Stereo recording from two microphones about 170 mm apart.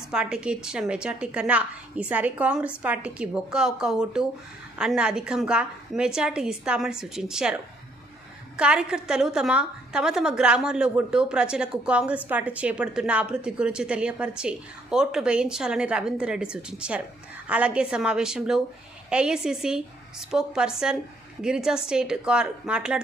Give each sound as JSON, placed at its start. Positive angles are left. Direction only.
{"t": 0.1, "sound": "a woman's voice", "side_deg": -5}